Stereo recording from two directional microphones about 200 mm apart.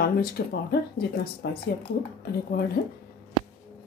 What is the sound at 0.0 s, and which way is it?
Speech, 50° left (ahead or behind).